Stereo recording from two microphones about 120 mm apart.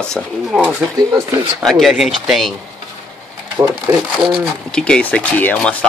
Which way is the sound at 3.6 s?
25° right (ahead or behind).